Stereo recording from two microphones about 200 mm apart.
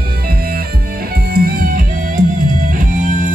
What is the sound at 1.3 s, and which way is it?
Music, 45° right (ahead or behind).